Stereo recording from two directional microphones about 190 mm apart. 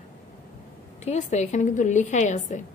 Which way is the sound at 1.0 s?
35° left (ahead or behind).